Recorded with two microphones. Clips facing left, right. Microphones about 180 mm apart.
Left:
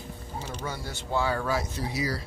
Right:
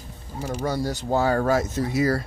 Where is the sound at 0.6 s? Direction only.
40° right (ahead or behind).